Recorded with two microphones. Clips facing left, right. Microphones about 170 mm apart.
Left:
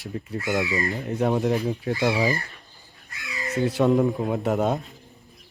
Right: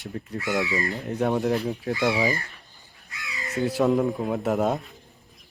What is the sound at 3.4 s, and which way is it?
Speech, centre (ahead or behind).